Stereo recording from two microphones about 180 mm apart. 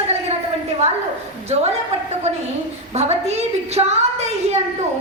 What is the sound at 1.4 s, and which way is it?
A woman's voice, 35° right (ahead or behind).